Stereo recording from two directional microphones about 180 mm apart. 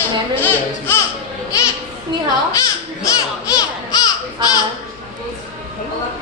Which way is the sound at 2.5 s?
20° left (ahead or behind).